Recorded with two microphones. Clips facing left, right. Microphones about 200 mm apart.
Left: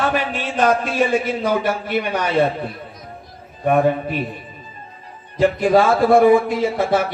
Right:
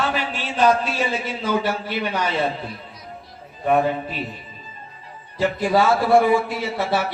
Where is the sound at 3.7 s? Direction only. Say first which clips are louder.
Left 3 dB; 55° left (ahead or behind).